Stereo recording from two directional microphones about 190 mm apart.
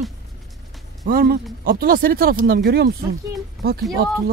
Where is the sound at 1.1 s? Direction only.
50° right (ahead or behind).